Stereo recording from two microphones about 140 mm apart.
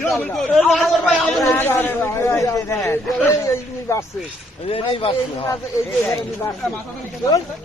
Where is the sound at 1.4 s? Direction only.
15° left (ahead or behind).